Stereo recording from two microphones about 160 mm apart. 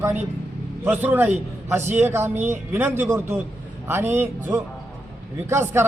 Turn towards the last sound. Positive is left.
turn(degrees=-15)  # may be behind; listen again after turning